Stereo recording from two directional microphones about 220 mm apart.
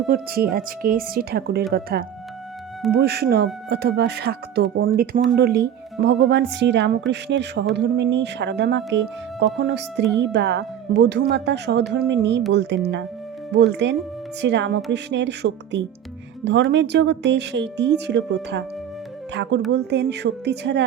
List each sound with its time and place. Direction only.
0.1 s speech: 45° right (ahead or behind)